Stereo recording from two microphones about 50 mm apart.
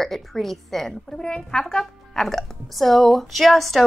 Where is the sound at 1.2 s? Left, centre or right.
Centre.